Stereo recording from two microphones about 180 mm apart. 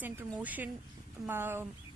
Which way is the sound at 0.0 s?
10° right (ahead or behind).